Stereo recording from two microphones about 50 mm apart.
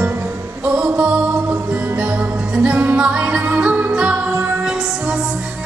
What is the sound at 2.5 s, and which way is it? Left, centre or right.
Music, right.